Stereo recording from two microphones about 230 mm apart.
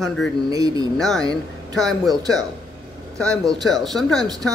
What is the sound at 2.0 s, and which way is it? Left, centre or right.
Speech, centre.